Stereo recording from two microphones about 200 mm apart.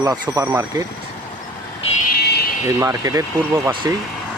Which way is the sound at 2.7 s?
15° right (ahead or behind).